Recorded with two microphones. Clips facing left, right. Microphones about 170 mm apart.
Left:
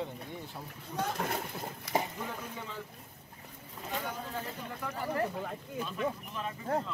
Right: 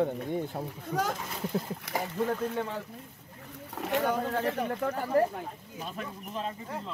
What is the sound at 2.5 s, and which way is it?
Speech, 70° right (ahead or behind).